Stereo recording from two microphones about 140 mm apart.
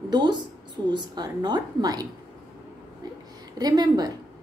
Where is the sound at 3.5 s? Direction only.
25° right (ahead or behind).